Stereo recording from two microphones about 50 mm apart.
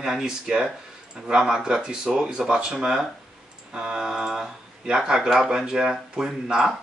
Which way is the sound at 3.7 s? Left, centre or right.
Right.